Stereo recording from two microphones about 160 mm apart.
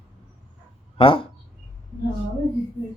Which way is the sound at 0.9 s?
35° left (ahead or behind).